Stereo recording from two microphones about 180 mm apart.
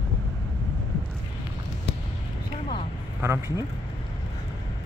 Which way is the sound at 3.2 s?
15° right (ahead or behind).